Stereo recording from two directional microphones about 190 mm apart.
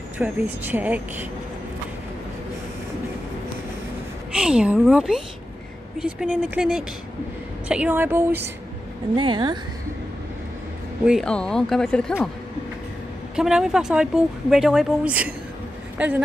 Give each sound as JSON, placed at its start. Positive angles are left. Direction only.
{"t": 0.2, "sound": "speech", "side_deg": -10}
{"t": 4.4, "sound": "speech", "side_deg": -5}
{"t": 9.1, "sound": "speech", "side_deg": -25}
{"t": 11.1, "sound": "speech", "side_deg": 5}
{"t": 13.4, "sound": "speech", "side_deg": -5}